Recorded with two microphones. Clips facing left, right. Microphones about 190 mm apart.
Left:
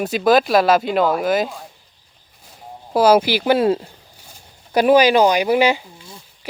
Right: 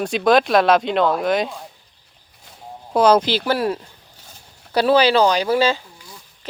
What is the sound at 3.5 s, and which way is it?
Speech, 25° left (ahead or behind).